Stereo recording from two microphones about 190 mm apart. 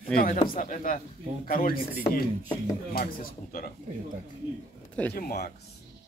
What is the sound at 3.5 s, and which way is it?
Speech, 50° left (ahead or behind).